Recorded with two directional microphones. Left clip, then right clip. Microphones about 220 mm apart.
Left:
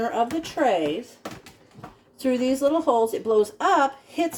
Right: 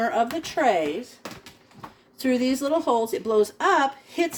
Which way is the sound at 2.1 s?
40° right (ahead or behind).